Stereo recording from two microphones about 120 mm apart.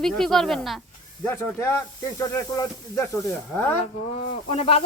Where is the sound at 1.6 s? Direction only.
25° left (ahead or behind).